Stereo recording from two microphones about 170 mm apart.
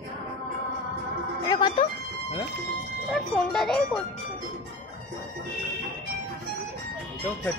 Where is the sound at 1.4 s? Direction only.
25° left (ahead or behind).